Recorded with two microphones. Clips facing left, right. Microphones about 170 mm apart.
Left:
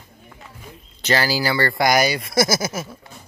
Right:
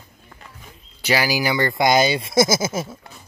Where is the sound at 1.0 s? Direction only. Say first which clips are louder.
Even; 10° right (ahead or behind).